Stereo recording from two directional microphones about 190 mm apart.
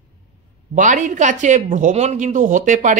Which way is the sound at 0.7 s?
40° right (ahead or behind).